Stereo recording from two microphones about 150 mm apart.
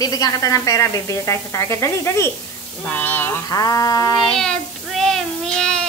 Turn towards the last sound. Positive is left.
turn(degrees=5)  # may be behind; listen again after turning